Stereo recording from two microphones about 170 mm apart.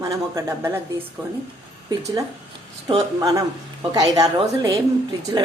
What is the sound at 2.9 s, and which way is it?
Speech, 20° right (ahead or behind).